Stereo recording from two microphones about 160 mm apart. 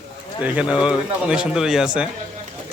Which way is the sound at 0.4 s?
10° right (ahead or behind).